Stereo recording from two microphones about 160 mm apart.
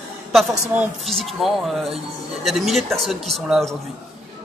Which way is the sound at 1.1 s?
Centre (ahead or behind).